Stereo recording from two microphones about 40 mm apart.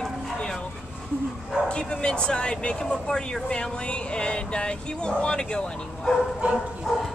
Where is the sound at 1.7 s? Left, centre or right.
Left.